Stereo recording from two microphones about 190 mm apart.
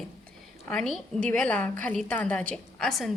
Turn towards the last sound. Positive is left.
turn(degrees=0)  # may be behind; listen again after turning